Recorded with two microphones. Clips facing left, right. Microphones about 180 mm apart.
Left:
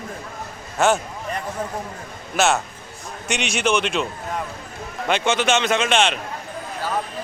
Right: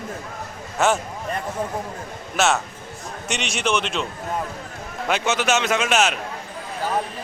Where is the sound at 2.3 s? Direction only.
Centre (ahead or behind).